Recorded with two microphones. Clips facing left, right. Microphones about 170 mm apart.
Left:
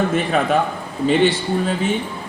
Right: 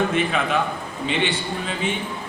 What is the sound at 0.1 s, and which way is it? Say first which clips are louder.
A man's voice: left 4 dB; 40° left (ahead or behind).